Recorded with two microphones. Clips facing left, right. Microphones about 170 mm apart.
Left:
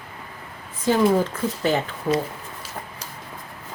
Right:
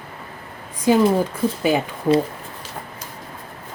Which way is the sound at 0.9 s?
15° right (ahead or behind).